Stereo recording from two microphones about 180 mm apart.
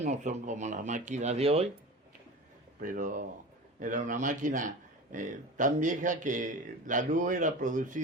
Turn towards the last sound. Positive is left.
turn(degrees=-45)  # may be behind; listen again after turning